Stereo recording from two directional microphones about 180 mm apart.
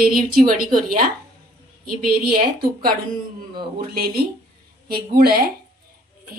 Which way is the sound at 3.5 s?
55° right (ahead or behind).